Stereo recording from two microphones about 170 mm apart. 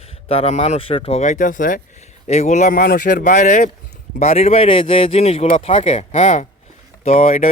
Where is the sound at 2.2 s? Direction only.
40° left (ahead or behind).